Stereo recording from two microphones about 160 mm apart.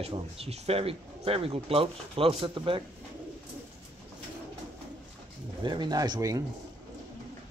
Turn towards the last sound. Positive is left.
turn(degrees=-25)  # may be behind; listen again after turning